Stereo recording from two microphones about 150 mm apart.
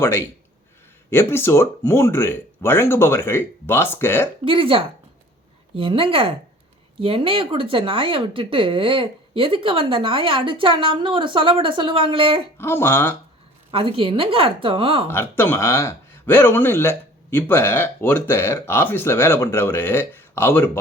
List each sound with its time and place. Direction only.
0.0 s speech: 15° left (ahead or behind)
4.4 s speech: 40° right (ahead or behind)
12.5 s speech: 15° left (ahead or behind)
13.7 s speech: 35° right (ahead or behind)
15.0 s speech: 15° left (ahead or behind)